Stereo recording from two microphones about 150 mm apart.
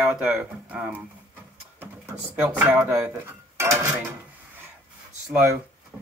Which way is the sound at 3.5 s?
20° right (ahead or behind).